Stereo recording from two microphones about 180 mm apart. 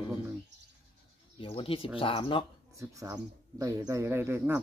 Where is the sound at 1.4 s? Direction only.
30° left (ahead or behind).